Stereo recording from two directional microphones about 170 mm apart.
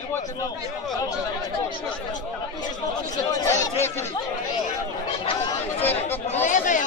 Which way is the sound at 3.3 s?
20° left (ahead or behind).